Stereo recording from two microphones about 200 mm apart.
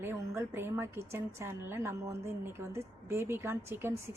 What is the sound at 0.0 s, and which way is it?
A woman's voice, 10° right (ahead or behind).